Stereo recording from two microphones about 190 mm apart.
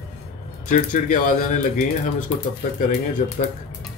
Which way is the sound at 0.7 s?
40° left (ahead or behind).